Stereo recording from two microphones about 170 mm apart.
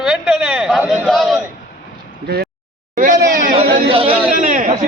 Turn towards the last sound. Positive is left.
turn(degrees=-50)  # may be behind; listen again after turning